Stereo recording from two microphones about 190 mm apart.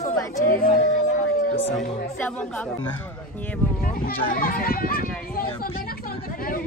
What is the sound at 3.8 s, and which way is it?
Speech, 50° left (ahead or behind).